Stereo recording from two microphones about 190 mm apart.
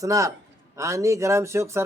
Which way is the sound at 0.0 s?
15° right (ahead or behind).